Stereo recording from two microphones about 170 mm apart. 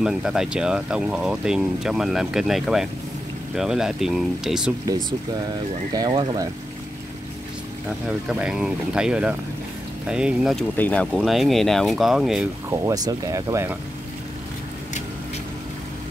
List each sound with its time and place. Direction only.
0.0 s speech: 5° right (ahead or behind)
5.9 s speech: 25° right (ahead or behind)
8.3 s speech: 5° right (ahead or behind)
10.8 s speech: 10° left (ahead or behind)
12.6 s speech: 20° right (ahead or behind)